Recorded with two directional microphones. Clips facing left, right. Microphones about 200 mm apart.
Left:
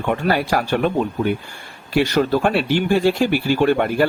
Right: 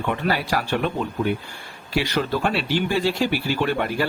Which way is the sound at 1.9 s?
50° left (ahead or behind).